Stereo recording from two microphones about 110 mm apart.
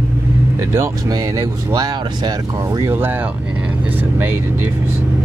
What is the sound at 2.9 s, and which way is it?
Speech, 20° right (ahead or behind).